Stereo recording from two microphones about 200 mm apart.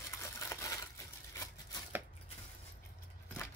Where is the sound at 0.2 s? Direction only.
15° left (ahead or behind).